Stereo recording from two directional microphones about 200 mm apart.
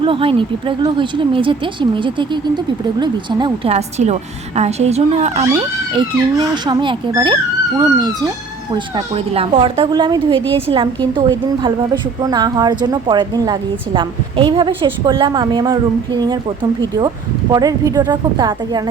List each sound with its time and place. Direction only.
0.0 s a woman's voice: 25° right (ahead or behind)
5.5 s a woman's voice: 20° right (ahead or behind)
17.5 s a woman's voice: 20° right (ahead or behind)